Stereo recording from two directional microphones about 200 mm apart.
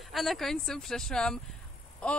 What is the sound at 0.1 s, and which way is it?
Speech, centre (ahead or behind).